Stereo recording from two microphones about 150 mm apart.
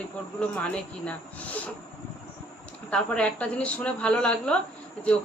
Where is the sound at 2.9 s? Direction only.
10° left (ahead or behind).